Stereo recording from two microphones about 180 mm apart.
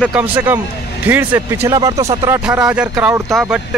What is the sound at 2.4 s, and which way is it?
Speech, 5° right (ahead or behind).